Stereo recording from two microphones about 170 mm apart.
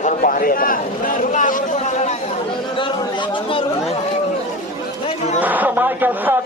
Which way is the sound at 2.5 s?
30° left (ahead or behind).